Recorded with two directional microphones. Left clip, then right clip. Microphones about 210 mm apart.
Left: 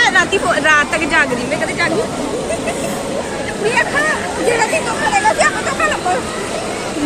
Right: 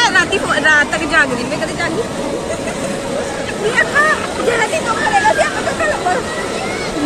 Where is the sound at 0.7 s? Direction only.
10° left (ahead or behind).